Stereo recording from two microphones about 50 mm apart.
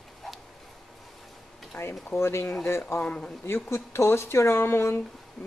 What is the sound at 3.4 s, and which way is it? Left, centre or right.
Speech, left.